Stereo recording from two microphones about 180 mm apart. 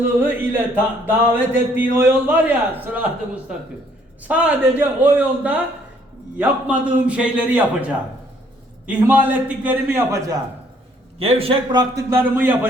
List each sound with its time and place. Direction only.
0.2 s a man's voice: 10° right (ahead or behind)
8.9 s a man's voice: 10° right (ahead or behind)
11.2 s a man's voice: 30° right (ahead or behind); by 12.5 s 10° right (ahead or behind)